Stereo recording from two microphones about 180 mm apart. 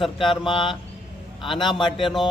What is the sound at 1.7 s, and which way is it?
Speech, 25° left (ahead or behind).